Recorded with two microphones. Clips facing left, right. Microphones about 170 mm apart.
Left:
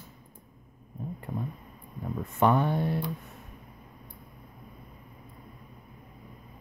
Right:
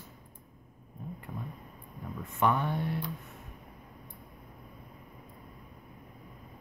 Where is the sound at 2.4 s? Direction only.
35° left (ahead or behind).